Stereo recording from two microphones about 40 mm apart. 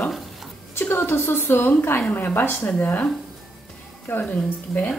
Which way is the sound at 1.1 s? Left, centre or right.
Left.